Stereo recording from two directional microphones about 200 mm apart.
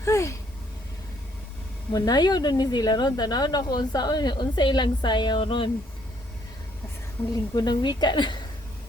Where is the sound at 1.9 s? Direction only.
20° left (ahead or behind).